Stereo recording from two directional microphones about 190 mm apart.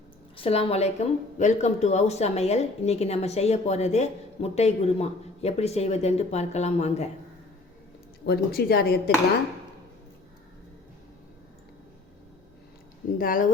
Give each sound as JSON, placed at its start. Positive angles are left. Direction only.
{"t": 0.3, "sound": "speech", "side_deg": 30}
{"t": 8.2, "sound": "speech", "side_deg": 55}
{"t": 13.1, "sound": "speech", "side_deg": 45}